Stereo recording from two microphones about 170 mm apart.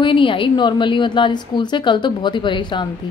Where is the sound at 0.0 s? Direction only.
30° left (ahead or behind).